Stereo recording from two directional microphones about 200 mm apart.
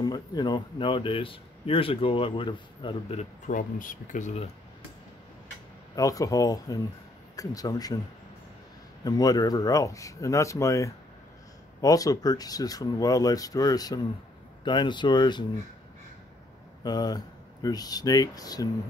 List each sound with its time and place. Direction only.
0.0 s a man's voice: 20° left (ahead or behind); by 4.5 s 40° left (ahead or behind)
5.9 s speech: 15° left (ahead or behind)
9.0 s a man's voice: 20° left (ahead or behind)
16.8 s a man's voice: 20° left (ahead or behind)